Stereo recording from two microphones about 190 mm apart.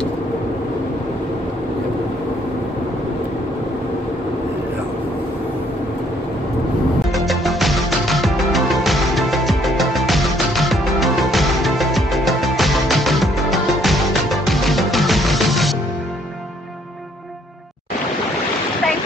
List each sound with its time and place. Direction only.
7.2 s music: centre (ahead or behind)